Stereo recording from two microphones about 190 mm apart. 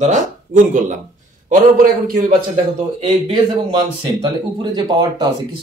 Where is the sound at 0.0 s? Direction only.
40° right (ahead or behind).